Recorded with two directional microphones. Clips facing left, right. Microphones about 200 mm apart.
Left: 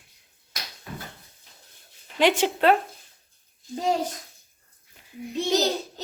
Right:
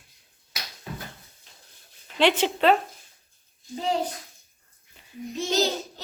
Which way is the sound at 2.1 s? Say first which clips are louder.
Left 1 dB; 10° left (ahead or behind).